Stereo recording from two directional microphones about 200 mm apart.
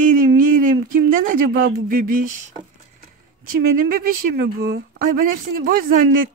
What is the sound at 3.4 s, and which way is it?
Speech, 45° right (ahead or behind).